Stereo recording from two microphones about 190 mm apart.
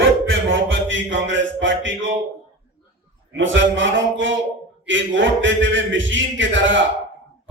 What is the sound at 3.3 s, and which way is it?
A man's voice, 80° right.